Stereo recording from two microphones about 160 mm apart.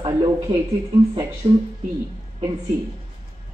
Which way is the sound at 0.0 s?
30° right (ahead or behind).